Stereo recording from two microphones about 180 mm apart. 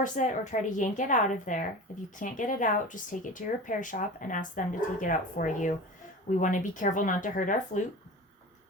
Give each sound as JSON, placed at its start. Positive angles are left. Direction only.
{"t": 0.0, "sound": "speech", "side_deg": 40}